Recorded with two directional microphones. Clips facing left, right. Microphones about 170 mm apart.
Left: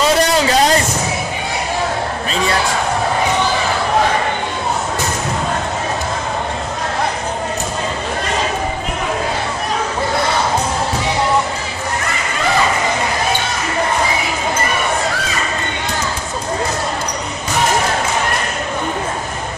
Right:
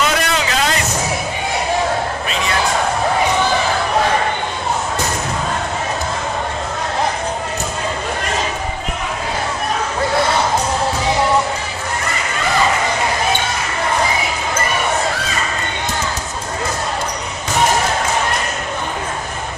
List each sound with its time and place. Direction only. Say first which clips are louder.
0.0 s vehicle: left 5 dB; 35° left (ahead or behind)